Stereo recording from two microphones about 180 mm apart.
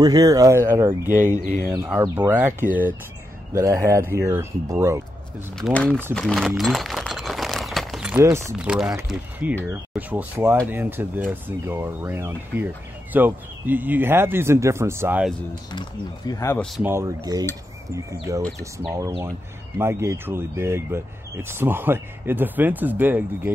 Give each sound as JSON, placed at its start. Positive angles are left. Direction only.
{"t": 0.0, "sound": "speech", "side_deg": -20}
{"t": 3.5, "sound": "speech", "side_deg": -15}
{"t": 5.6, "sound": "speech", "side_deg": 5}
{"t": 6.1, "sound": "a sound", "side_deg": 0}
{"t": 8.2, "sound": "speech", "side_deg": -15}
{"t": 8.5, "sound": "speech", "side_deg": -5}
{"t": 15.7, "sound": "speech", "side_deg": 25}
{"t": 16.8, "sound": "speech", "side_deg": -15}